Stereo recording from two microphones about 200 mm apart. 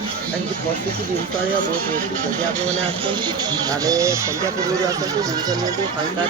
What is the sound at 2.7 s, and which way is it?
Speech, 30° right (ahead or behind).